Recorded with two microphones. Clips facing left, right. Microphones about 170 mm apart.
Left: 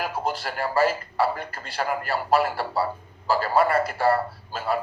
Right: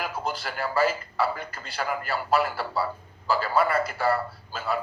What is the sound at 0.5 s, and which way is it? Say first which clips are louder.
A man's voice: left 2 dB; 30° left (ahead or behind).